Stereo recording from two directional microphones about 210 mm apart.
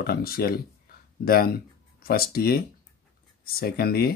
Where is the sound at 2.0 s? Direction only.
45° left (ahead or behind).